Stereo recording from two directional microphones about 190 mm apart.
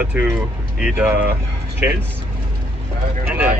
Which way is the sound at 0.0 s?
10° right (ahead or behind).